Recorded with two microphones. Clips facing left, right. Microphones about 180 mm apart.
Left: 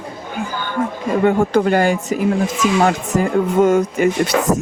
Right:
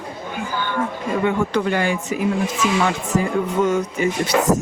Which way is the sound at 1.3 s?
45° left (ahead or behind).